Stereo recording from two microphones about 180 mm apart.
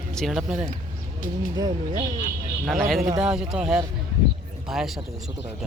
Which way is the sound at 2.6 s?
Centre (ahead or behind).